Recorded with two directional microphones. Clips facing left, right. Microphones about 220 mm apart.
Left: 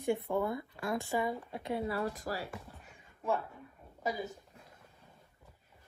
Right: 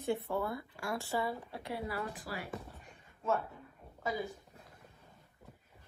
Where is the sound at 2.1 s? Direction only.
40° left (ahead or behind).